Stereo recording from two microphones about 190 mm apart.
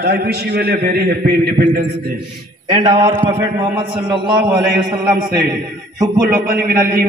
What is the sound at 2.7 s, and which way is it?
Speech, 35° right (ahead or behind).